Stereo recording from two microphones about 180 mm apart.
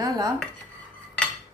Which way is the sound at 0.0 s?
20° right (ahead or behind).